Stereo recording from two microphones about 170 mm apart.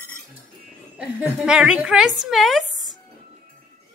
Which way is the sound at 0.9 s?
10° right (ahead or behind).